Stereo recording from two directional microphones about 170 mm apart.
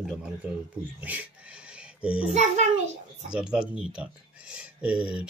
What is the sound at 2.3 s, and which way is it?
Speech, 45° right (ahead or behind).